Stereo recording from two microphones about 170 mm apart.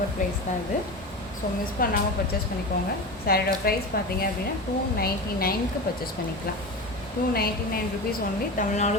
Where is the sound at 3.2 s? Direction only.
60° left (ahead or behind).